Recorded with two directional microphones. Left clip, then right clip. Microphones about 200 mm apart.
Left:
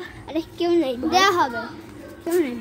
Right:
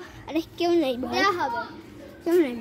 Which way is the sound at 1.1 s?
35° left (ahead or behind).